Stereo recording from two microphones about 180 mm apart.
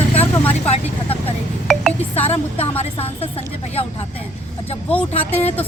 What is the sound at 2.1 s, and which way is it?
Speech, 35° left (ahead or behind).